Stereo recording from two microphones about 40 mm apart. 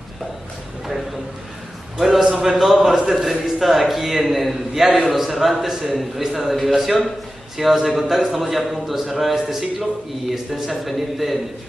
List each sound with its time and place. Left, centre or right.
2.0 s a man's voice: centre